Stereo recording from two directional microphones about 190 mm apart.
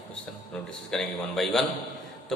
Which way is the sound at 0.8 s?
Centre (ahead or behind).